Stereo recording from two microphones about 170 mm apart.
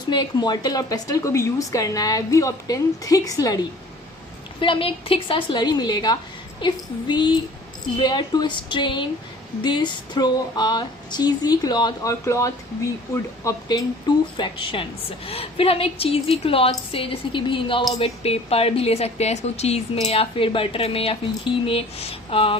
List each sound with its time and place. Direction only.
0.0 s speech: 25° left (ahead or behind)
4.6 s a woman's voice: 30° left (ahead or behind)